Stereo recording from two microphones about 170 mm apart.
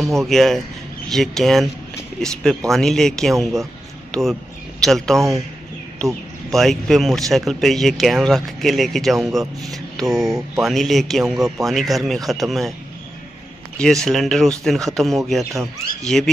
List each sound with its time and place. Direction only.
0.3 s speech: centre (ahead or behind)
10.2 s speech: 20° right (ahead or behind)
10.6 s speech: centre (ahead or behind)
13.7 s speech: centre (ahead or behind)